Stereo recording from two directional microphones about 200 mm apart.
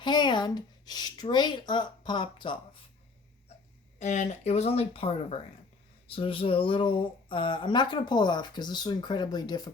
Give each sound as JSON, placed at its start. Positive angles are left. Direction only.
{"t": 0.0, "sound": "speech", "side_deg": 20}
{"t": 3.9, "sound": "speech", "side_deg": 35}